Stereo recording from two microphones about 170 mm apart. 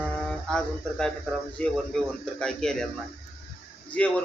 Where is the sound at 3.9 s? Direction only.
10° left (ahead or behind).